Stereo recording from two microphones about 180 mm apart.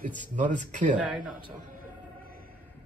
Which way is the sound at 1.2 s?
25° right (ahead or behind).